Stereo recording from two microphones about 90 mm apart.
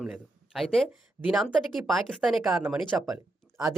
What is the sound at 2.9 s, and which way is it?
Speech, 15° right (ahead or behind).